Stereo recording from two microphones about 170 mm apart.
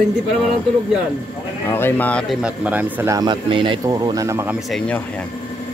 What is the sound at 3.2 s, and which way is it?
Speech, 25° right (ahead or behind).